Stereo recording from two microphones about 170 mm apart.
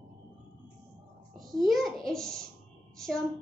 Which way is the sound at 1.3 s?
Centre (ahead or behind).